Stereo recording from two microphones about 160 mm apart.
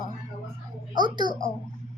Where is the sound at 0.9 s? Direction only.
25° right (ahead or behind).